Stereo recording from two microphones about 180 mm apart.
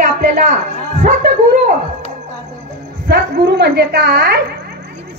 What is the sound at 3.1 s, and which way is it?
A woman's voice, 65° right (ahead or behind).